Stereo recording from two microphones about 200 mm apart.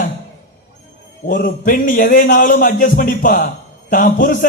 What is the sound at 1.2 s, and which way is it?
A man's voice, 45° left (ahead or behind).